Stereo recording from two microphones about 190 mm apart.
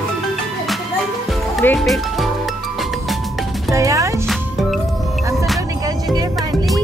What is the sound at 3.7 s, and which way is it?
Music, 15° right (ahead or behind).